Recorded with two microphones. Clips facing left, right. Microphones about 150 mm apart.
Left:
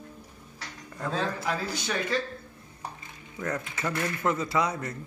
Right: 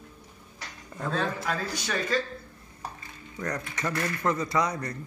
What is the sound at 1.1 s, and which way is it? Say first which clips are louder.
Speech: even; 15° left (ahead or behind).